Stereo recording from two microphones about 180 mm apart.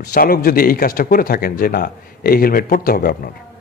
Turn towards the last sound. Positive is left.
turn(degrees=55)  # may be behind; listen again after turning